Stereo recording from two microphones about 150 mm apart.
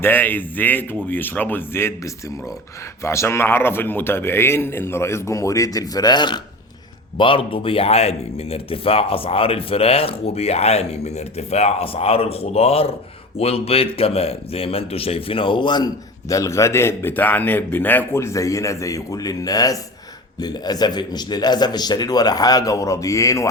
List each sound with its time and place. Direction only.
0.0 s a man's voice: 10° left (ahead or behind)